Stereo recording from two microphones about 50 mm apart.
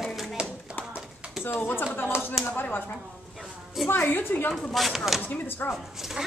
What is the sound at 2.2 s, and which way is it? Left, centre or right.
Speech, left.